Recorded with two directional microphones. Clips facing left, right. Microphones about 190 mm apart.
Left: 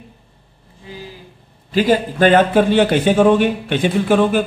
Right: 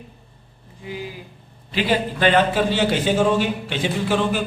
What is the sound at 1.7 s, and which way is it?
A man's voice, 45° left (ahead or behind).